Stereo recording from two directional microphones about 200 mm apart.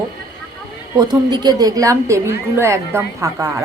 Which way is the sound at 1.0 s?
20° right (ahead or behind).